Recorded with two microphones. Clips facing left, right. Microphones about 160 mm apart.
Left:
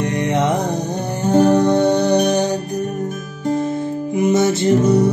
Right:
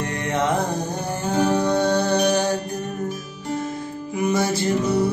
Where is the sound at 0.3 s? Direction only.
20° left (ahead or behind).